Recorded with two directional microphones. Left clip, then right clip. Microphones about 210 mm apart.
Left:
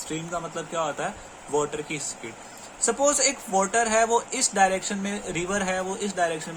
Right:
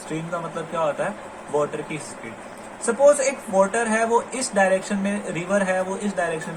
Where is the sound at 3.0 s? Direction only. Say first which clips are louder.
Right 9 dB; 30° left (ahead or behind).